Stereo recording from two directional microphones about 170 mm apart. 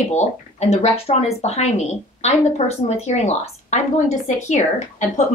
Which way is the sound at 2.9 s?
40° left (ahead or behind).